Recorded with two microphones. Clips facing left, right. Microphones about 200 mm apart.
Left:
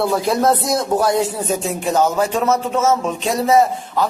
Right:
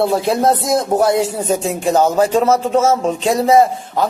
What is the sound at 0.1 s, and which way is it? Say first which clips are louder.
Speech: right 1 dB; 30° right (ahead or behind).